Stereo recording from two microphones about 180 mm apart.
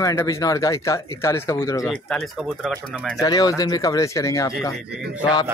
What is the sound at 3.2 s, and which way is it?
Speech, 20° left (ahead or behind).